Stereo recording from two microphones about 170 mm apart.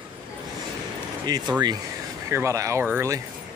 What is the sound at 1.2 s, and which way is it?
Speech, 25° right (ahead or behind).